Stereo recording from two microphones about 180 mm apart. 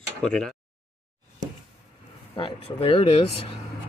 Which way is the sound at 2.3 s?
30° left (ahead or behind).